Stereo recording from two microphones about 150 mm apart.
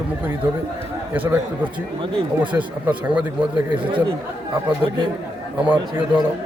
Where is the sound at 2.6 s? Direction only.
10° right (ahead or behind).